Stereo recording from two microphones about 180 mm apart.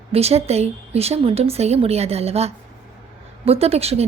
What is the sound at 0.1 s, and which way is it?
A woman's voice, 35° right (ahead or behind).